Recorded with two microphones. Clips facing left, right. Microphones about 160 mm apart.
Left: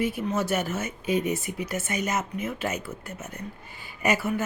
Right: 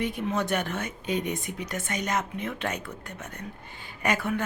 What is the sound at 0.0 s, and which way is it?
Speech, 5° left (ahead or behind).